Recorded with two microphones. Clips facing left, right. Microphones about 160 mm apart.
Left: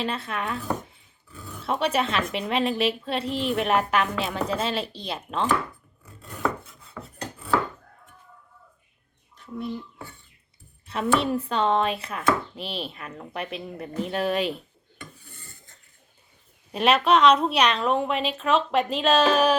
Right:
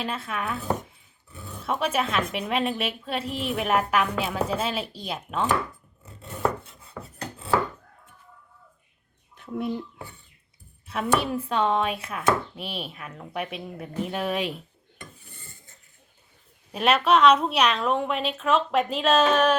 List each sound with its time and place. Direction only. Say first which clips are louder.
0.0 s a woman's voice: left 1 dB; centre (ahead or behind)
1.3 s dog: even; 20° right (ahead or behind)
1.6 s a woman's voice: left 1 dB; centre (ahead or behind)
6.1 s chopping: right 1 dB; 25° right (ahead or behind)
7.0 s chopping: right 1 dB; 15° right (ahead or behind)
10.8 s a woman's voice: left 1 dB; centre (ahead or behind)
16.7 s a woman's voice: left 1 dB; centre (ahead or behind)